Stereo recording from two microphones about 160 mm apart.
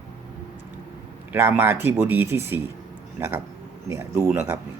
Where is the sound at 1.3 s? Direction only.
15° right (ahead or behind).